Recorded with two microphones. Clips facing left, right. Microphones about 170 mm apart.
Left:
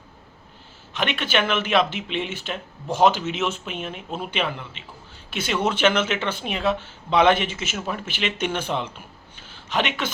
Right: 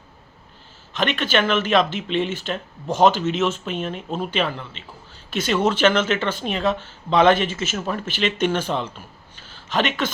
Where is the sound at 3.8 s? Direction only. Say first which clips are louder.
Right 5 dB; 10° left (ahead or behind).